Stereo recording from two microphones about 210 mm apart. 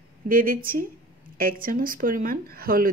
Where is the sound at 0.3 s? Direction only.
40° right (ahead or behind).